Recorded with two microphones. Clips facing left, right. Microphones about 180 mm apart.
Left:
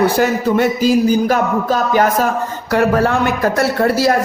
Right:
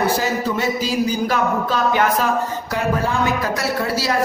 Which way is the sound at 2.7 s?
70° left (ahead or behind).